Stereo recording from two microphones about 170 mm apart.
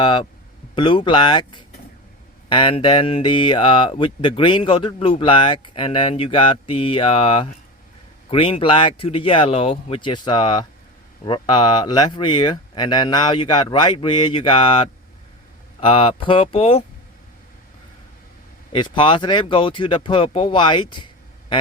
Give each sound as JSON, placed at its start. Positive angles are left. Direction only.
{"t": 0.0, "sound": "speech", "side_deg": 25}
{"t": 18.7, "sound": "speech", "side_deg": 30}